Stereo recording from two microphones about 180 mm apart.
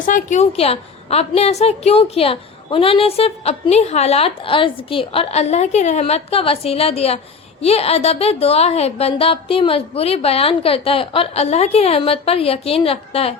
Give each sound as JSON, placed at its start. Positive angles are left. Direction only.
{"t": 0.0, "sound": "a woman's voice", "side_deg": 45}